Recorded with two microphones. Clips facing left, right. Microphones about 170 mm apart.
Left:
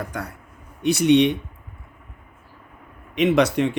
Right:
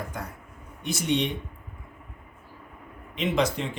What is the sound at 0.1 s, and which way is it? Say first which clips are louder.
Speech: left 5 dB; 80° left.